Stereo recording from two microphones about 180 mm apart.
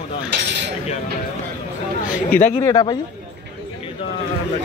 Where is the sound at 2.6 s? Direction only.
20° left (ahead or behind).